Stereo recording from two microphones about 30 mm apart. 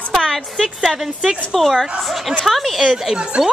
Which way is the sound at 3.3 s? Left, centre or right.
Right.